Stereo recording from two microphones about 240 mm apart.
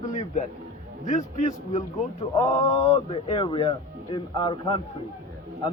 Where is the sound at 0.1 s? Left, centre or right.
Left.